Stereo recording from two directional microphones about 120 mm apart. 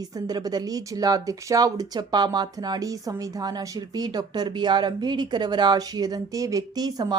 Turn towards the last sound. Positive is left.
turn(degrees=-30)  # may be behind; listen again after turning